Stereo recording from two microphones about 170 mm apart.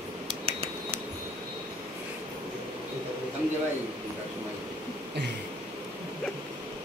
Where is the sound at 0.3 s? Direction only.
30° right (ahead or behind).